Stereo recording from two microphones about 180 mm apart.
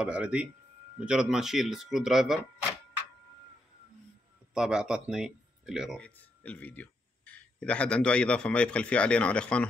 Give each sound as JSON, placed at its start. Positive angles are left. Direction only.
{"t": 0.0, "sound": "speech", "side_deg": -5}
{"t": 4.6, "sound": "speech", "side_deg": -5}